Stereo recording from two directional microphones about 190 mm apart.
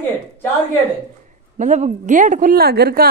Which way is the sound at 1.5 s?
40° right (ahead or behind).